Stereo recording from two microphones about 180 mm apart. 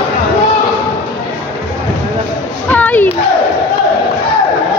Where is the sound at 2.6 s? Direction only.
10° left (ahead or behind).